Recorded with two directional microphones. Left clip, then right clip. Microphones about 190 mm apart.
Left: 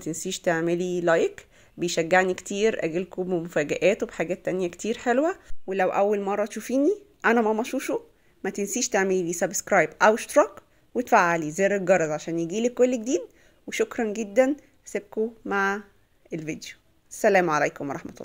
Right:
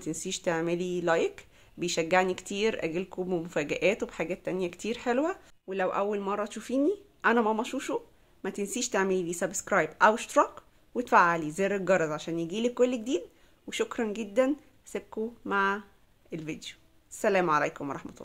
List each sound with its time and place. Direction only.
0.0 s speech: 15° left (ahead or behind)